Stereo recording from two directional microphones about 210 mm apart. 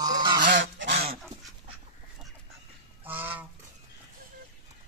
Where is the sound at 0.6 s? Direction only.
60° right (ahead or behind).